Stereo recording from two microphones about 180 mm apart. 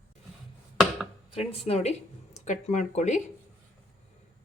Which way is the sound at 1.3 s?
35° left (ahead or behind).